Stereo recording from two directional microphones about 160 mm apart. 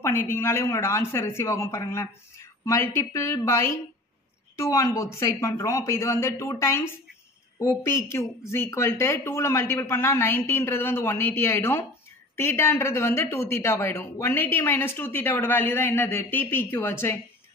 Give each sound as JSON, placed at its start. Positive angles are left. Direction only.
{"t": 0.0, "sound": "speech", "side_deg": 15}